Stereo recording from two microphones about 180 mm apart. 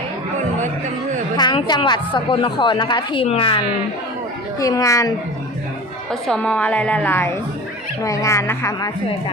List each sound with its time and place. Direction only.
1.4 s a woman's voice: 25° left (ahead or behind)
4.6 s a woman's voice: 20° left (ahead or behind)
6.1 s a woman's voice: 5° left (ahead or behind)